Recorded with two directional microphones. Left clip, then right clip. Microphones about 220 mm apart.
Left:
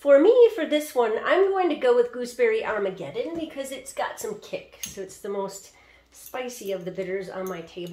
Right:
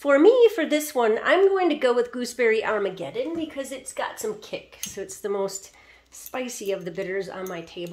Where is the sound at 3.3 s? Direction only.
25° right (ahead or behind); by 7.7 s 45° right (ahead or behind).